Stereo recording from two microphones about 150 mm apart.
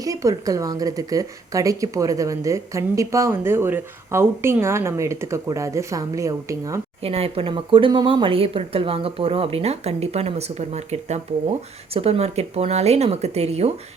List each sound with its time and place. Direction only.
0.0 s speech: 20° right (ahead or behind)
7.0 s speech: 40° right (ahead or behind)